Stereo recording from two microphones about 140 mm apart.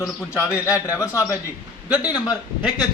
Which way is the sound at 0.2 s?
20° left (ahead or behind).